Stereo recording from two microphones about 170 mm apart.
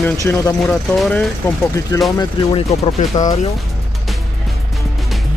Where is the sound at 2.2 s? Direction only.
35° left (ahead or behind).